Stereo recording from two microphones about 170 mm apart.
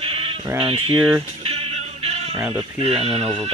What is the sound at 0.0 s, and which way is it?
Sheep, 35° right (ahead or behind).